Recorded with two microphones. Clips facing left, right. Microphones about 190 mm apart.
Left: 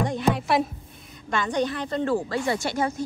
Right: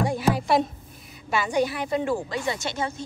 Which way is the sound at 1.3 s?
10° right (ahead or behind).